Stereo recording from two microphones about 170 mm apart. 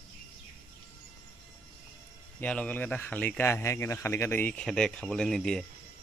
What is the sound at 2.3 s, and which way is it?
Speech, 10° left (ahead or behind).